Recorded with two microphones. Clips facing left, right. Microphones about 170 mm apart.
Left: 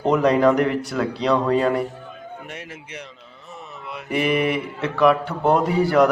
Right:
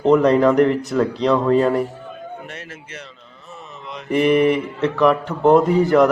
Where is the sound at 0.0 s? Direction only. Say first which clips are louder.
Right 3 dB; 5° left (ahead or behind).